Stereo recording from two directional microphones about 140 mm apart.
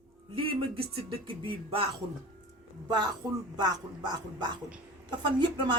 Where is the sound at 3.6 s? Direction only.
30° right (ahead or behind).